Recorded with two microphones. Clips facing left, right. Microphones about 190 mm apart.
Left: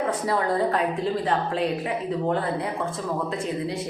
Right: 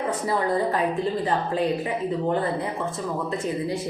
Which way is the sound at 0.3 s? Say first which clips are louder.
Right 1 dB; centre (ahead or behind).